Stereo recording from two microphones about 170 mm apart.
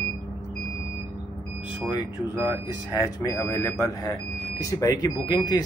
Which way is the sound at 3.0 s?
20° left (ahead or behind).